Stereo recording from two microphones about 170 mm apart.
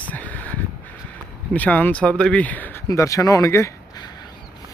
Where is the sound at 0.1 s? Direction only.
10° left (ahead or behind).